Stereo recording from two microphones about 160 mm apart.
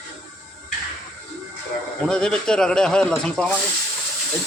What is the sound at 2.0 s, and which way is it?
Speech, 5° left (ahead or behind).